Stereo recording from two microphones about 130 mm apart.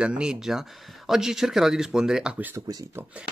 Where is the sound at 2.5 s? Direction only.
25° right (ahead or behind).